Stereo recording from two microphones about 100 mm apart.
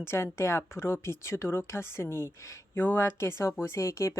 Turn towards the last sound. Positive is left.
turn(degrees=30)  # may be behind; listen again after turning